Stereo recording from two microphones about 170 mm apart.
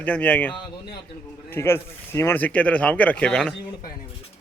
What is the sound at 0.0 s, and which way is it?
Speech, 10° left (ahead or behind).